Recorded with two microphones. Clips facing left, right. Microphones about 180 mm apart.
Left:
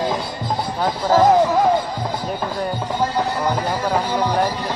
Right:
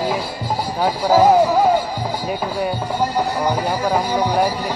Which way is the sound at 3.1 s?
10° right (ahead or behind).